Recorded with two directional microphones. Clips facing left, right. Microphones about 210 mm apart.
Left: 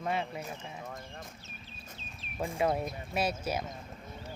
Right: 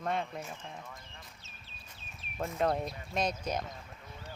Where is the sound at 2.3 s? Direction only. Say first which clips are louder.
Left 1 dB; 10° left (ahead or behind).